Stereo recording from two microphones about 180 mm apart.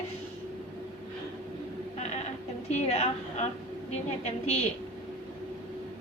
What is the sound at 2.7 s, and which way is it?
Speech, 35° left (ahead or behind).